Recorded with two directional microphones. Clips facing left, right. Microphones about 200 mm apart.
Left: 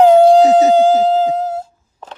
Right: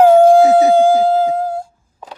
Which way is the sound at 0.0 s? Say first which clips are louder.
Even; 10° right (ahead or behind).